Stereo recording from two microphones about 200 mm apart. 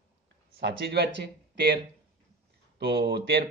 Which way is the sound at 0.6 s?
55° right (ahead or behind).